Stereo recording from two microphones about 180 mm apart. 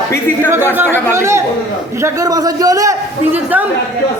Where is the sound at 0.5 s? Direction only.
15° right (ahead or behind).